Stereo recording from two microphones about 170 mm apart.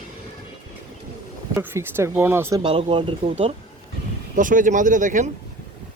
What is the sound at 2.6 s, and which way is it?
Speech, 30° right (ahead or behind).